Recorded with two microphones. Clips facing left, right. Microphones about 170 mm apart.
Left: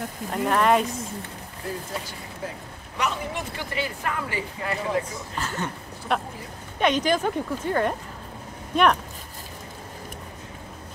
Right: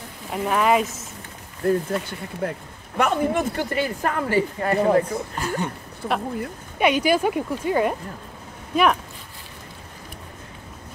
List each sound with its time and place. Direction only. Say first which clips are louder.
0.3 s speech: right 1 dB; 5° right (ahead or behind)
1.7 s speech: right 11 dB; 60° right (ahead or behind)
5.4 s speech: right 2 dB; 15° right (ahead or behind)
6.0 s speech: right 1 dB; 60° right (ahead or behind)
6.8 s speech: right 3 dB; 10° right (ahead or behind)